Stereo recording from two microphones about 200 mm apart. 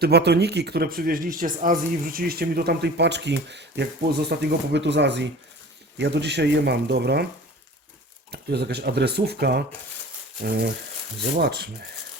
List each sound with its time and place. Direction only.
0.0 s speech: 55° right (ahead or behind)
8.3 s speech: 55° right (ahead or behind)